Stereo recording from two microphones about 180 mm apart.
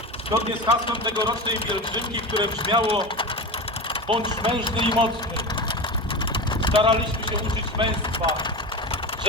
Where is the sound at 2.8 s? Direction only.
25° left (ahead or behind).